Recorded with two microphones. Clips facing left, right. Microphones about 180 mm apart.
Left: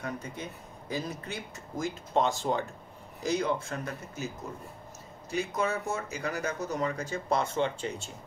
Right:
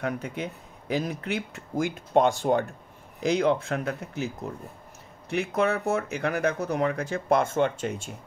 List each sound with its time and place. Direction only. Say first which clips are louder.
0.0 s speech: right 7 dB; 65° right (ahead or behind)
5.3 s speech: right 5 dB; 65° right (ahead or behind)